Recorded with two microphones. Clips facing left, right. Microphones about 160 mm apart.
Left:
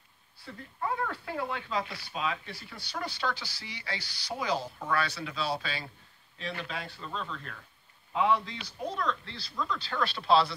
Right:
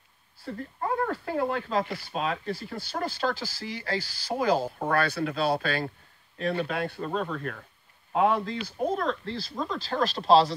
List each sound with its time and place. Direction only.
0.5 s speech: 45° right (ahead or behind)